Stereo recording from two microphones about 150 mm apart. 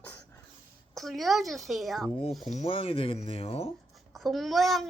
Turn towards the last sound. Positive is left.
turn(degrees=0)  # may be behind; listen again after turning